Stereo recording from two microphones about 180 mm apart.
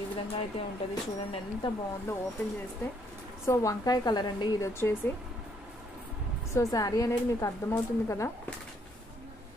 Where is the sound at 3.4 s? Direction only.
15° left (ahead or behind).